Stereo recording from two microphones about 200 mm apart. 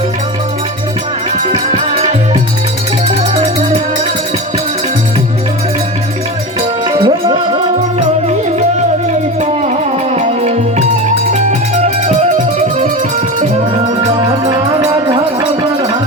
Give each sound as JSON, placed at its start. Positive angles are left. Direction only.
{"t": 1.5, "sound": "music", "side_deg": -35}
{"t": 6.6, "sound": "music", "side_deg": -20}
{"t": 9.4, "sound": "music", "side_deg": -35}
{"t": 14.0, "sound": "music", "side_deg": -20}